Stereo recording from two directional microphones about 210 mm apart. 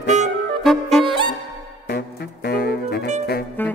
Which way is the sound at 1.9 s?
50° left (ahead or behind).